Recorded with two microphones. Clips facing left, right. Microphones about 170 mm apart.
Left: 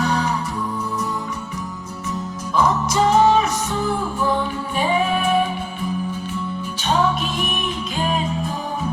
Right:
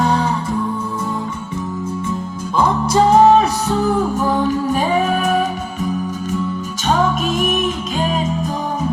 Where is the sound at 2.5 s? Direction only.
30° right (ahead or behind).